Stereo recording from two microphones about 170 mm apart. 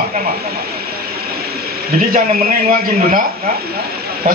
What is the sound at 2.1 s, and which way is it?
Speech, 40° right (ahead or behind).